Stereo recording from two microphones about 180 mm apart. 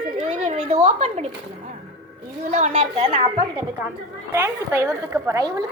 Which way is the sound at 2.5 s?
40° right (ahead or behind).